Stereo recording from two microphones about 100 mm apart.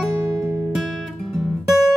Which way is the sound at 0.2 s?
30° right (ahead or behind).